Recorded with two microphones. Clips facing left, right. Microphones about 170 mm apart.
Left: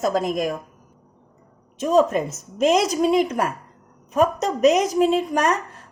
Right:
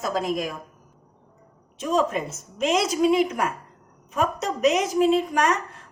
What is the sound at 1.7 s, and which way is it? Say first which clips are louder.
A woman's voice: left 5 dB; 40° left (ahead or behind).